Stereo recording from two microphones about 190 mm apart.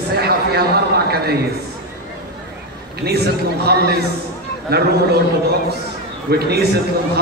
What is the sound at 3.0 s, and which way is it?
A man's voice, 55° right (ahead or behind).